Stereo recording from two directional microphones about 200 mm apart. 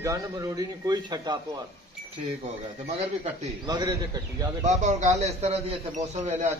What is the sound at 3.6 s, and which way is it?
Speech, 20° right (ahead or behind).